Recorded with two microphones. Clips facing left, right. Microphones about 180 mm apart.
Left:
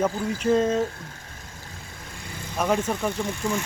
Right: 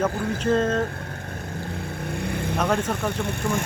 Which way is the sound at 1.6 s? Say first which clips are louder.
Right 13 dB; 60° right (ahead or behind).